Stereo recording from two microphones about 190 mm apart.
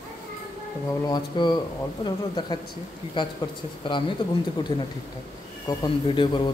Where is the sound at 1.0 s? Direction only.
20° left (ahead or behind).